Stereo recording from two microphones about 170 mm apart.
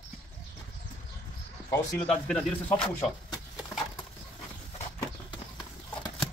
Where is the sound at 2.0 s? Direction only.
5° left (ahead or behind).